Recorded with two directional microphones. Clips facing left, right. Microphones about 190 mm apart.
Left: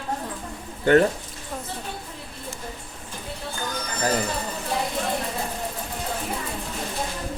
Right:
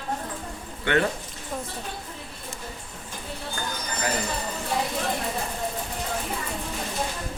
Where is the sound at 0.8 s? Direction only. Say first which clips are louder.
Left 7 dB; 40° left (ahead or behind).